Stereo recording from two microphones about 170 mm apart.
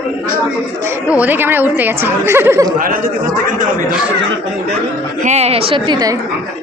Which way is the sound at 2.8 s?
55° right (ahead or behind).